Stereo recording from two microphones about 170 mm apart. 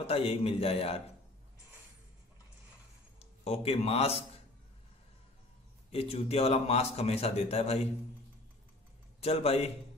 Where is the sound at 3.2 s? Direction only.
35° left (ahead or behind).